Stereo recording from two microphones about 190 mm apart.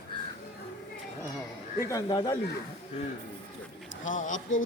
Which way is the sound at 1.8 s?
20° left (ahead or behind).